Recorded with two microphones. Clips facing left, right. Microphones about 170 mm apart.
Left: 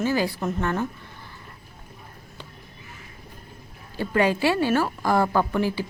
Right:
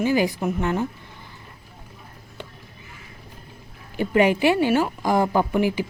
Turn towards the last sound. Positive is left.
turn(degrees=-15)  # may be behind; listen again after turning